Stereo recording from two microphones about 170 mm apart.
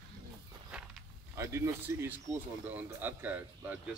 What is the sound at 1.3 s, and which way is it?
Speech, 15° right (ahead or behind).